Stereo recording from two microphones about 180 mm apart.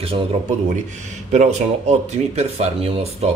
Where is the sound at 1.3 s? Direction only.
40° right (ahead or behind).